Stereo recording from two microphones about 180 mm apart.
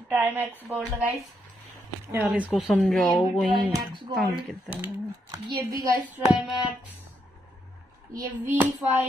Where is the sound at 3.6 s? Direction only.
20° right (ahead or behind).